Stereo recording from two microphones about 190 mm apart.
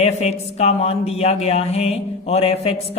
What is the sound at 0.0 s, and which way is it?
A man's voice, 35° left (ahead or behind).